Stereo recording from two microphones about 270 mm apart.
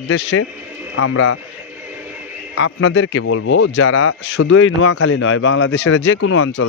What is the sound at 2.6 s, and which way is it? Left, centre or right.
Speech, left.